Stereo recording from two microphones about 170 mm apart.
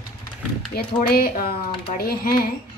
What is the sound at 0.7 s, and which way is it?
Speech, 65° left (ahead or behind).